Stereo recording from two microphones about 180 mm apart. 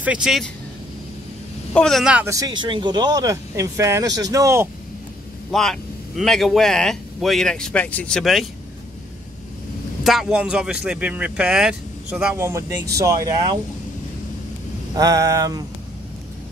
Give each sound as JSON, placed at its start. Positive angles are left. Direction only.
{"t": 0.0, "sound": "speech", "side_deg": -5}
{"t": 1.7, "sound": "speech", "side_deg": 5}
{"t": 2.2, "sound": "speech", "side_deg": -20}
{"t": 5.5, "sound": "speech", "side_deg": 0}
{"t": 10.0, "sound": "speech", "side_deg": -5}
{"t": 12.4, "sound": "speech", "side_deg": -15}
{"t": 15.0, "sound": "speech", "side_deg": -20}